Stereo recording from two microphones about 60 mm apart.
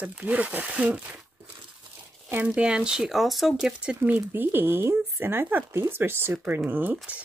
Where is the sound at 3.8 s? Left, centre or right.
Right.